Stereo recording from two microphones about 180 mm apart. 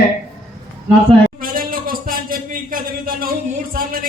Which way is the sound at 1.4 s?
50° right (ahead or behind).